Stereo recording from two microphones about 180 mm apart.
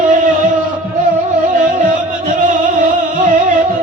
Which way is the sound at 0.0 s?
45° right (ahead or behind).